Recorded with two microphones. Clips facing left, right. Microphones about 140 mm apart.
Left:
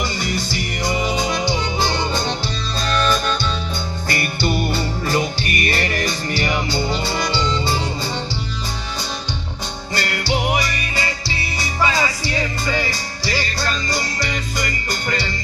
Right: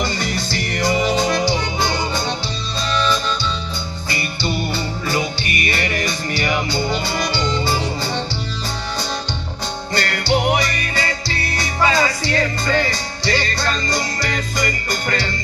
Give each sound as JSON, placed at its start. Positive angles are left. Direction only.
{"t": 0.0, "sound": "music", "side_deg": 10}
{"t": 5.0, "sound": "music", "side_deg": 45}
{"t": 9.9, "sound": "music", "side_deg": 5}